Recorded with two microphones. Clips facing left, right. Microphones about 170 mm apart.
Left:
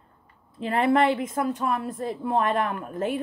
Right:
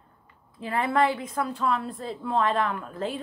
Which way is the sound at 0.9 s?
20° left (ahead or behind).